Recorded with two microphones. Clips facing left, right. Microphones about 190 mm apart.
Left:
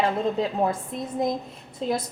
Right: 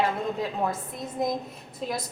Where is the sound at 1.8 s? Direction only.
25° left (ahead or behind).